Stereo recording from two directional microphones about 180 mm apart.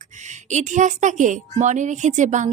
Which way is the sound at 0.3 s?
40° right (ahead or behind).